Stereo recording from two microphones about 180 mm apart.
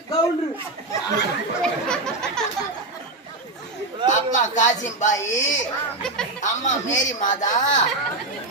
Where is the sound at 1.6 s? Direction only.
5° left (ahead or behind).